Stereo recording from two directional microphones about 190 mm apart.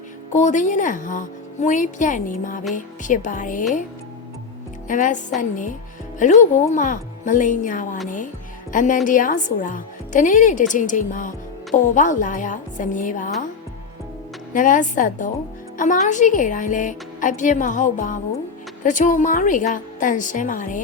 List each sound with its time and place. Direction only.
0.3 s a woman's voice: 40° left (ahead or behind)
4.9 s a woman's voice: 45° left (ahead or behind)
14.5 s a woman's voice: 45° left (ahead or behind)